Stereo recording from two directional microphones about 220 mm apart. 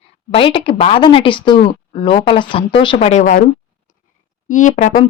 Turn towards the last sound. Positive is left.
turn(degrees=35)  # may be behind; listen again after turning